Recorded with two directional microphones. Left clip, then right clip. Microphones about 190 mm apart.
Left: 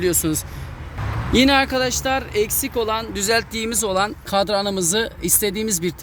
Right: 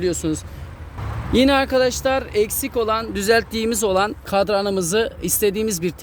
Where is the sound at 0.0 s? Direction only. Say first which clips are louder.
Left 1 dB; 20° right (ahead or behind).